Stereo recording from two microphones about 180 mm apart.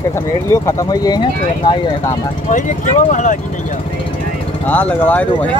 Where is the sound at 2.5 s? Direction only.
45° left (ahead or behind).